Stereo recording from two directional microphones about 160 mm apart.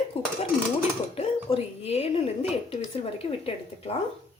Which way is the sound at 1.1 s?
40° left (ahead or behind).